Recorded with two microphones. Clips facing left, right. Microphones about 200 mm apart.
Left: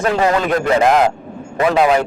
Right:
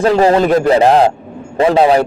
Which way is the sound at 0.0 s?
30° right (ahead or behind).